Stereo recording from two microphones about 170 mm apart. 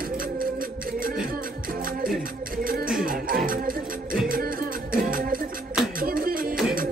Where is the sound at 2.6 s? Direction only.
55° right (ahead or behind).